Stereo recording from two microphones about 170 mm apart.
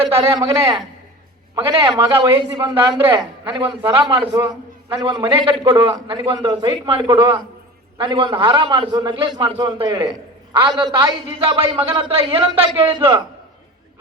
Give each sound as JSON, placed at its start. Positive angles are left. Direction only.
{"t": 1.5, "sound": "a man's voice", "side_deg": -30}
{"t": 2.7, "sound": "a man's voice", "side_deg": -15}
{"t": 3.5, "sound": "a man's voice", "side_deg": -30}